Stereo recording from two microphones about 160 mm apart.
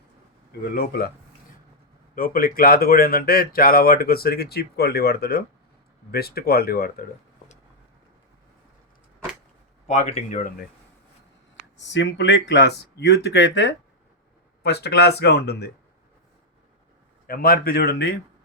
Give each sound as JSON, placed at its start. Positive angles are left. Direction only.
{"t": 0.7, "sound": "speech", "side_deg": 75}
{"t": 2.1, "sound": "speech", "side_deg": 65}
{"t": 9.8, "sound": "speech", "side_deg": 45}
{"t": 11.9, "sound": "speech", "side_deg": 90}
{"t": 17.2, "sound": "speech", "side_deg": 65}